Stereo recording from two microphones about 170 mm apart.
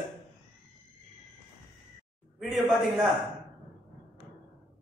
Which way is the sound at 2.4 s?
Centre (ahead or behind).